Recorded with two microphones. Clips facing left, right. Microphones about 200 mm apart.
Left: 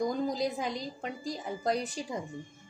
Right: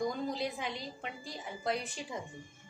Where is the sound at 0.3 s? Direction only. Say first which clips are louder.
Left 5 dB; 40° left (ahead or behind).